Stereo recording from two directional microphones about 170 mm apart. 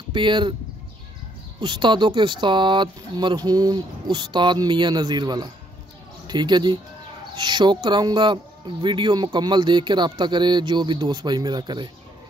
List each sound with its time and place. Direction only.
0.1 s speech: 30° right (ahead or behind)
1.6 s speech: 30° right (ahead or behind)